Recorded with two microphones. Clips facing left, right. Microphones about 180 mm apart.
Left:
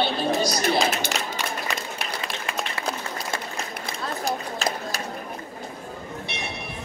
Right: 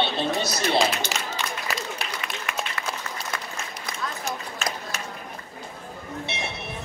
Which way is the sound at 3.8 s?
35° left (ahead or behind).